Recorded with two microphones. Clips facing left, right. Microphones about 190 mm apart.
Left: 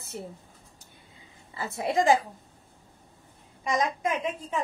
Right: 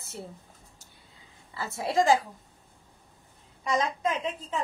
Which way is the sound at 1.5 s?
20° left (ahead or behind).